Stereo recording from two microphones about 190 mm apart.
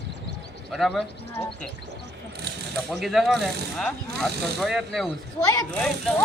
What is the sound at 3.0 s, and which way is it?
Speech, centre (ahead or behind).